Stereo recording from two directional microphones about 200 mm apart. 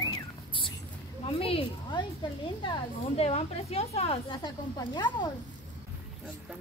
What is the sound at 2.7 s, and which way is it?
Speech, 30° left (ahead or behind).